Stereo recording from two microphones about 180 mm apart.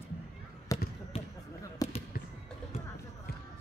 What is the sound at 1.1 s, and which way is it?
Basketball bounce, 30° left (ahead or behind).